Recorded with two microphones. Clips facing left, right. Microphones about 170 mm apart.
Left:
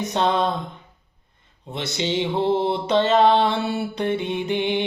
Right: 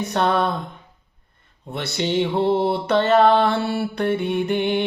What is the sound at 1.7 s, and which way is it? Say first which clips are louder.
Music: right 2 dB; 20° left (ahead or behind).